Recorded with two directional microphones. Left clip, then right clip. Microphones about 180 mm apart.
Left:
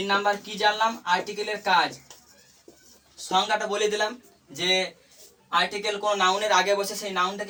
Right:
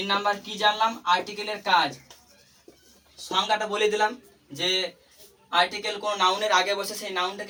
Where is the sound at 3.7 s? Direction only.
25° left (ahead or behind).